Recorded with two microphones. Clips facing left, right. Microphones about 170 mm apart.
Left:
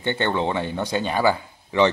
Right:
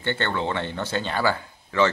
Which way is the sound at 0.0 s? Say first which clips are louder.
Left 3 dB; 15° left (ahead or behind).